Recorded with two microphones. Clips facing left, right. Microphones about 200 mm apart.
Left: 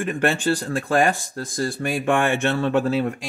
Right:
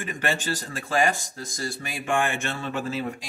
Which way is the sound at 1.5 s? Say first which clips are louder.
Left 9 dB; 55° left (ahead or behind).